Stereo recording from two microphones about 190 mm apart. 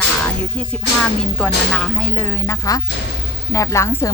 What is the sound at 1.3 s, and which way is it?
A woman's voice, 5° left (ahead or behind).